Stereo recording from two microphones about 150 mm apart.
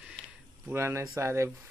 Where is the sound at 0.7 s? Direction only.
15° right (ahead or behind).